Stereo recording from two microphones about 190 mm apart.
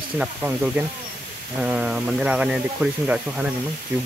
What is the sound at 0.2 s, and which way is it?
Speech, 10° right (ahead or behind).